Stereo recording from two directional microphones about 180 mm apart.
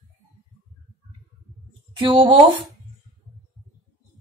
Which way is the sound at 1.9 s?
30° right (ahead or behind).